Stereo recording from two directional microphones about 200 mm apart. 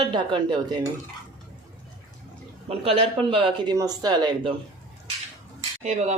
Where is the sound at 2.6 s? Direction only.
30° right (ahead or behind).